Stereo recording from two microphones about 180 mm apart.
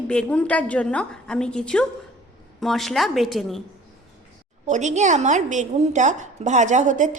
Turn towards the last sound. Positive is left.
turn(degrees=-45)  # may be behind; listen again after turning